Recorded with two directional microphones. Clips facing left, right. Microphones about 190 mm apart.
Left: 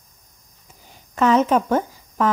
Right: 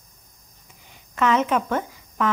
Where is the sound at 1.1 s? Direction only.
35° left (ahead or behind).